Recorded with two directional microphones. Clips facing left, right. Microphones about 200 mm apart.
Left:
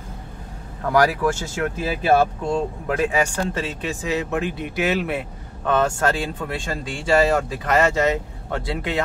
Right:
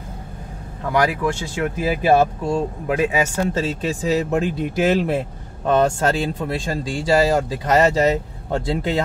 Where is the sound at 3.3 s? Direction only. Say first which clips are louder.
Right 4 dB; 30° right (ahead or behind).